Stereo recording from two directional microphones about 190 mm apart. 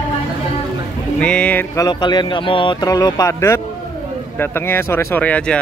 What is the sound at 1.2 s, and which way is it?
Speech, 5° left (ahead or behind).